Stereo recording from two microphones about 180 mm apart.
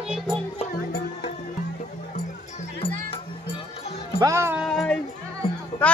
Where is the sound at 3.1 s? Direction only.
35° left (ahead or behind).